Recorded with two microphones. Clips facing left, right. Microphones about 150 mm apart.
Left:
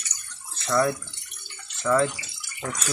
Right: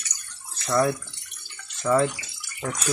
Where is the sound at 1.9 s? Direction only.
15° right (ahead or behind).